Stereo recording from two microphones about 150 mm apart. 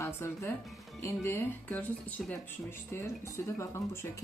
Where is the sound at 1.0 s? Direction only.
15° left (ahead or behind).